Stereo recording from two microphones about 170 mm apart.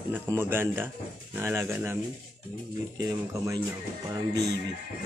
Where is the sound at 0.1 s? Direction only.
15° right (ahead or behind).